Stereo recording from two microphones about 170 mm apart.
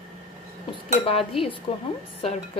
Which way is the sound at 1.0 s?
35° left (ahead or behind).